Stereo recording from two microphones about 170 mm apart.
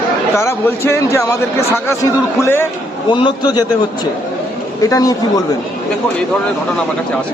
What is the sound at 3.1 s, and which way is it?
Speech, 25° left (ahead or behind).